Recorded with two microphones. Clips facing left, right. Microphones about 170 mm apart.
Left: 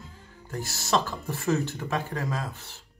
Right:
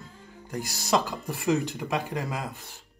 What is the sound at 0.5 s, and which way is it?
Speech, 15° right (ahead or behind).